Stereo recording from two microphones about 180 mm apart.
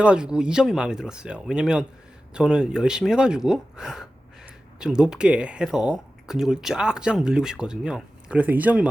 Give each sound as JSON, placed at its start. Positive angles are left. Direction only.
{"t": 0.0, "sound": "speech", "side_deg": -5}